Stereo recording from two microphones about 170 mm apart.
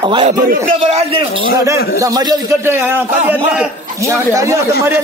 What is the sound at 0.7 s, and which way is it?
Speech, 40° right (ahead or behind).